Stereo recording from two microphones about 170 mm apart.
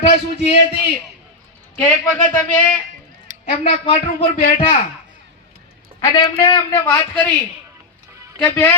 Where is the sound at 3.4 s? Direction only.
40° left (ahead or behind).